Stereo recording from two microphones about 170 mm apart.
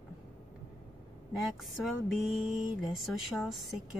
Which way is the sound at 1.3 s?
Centre (ahead or behind).